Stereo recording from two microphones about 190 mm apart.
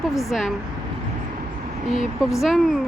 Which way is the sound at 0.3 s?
Centre (ahead or behind).